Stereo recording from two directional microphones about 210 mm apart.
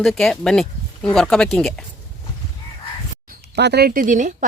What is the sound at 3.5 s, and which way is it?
Speech, 50° right (ahead or behind).